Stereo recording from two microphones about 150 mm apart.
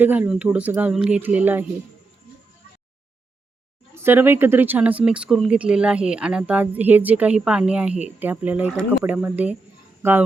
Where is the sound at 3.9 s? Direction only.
15° right (ahead or behind).